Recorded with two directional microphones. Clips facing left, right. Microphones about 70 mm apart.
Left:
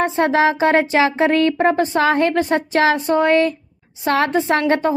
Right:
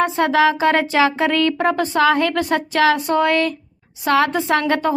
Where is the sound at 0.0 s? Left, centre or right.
Left.